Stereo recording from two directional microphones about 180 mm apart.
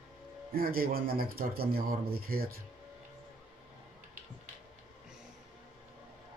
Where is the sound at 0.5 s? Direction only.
55° right (ahead or behind).